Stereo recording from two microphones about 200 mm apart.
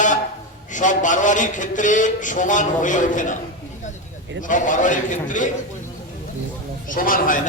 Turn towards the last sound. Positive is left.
turn(degrees=40)  # may be behind; listen again after turning